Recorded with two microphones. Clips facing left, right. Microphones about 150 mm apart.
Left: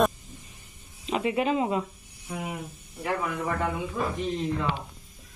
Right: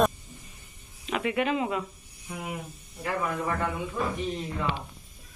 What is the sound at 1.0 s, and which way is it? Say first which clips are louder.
Speech: left 2 dB; 25° left (ahead or behind).